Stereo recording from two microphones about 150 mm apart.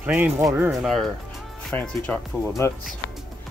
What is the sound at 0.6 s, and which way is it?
Speech, centre (ahead or behind).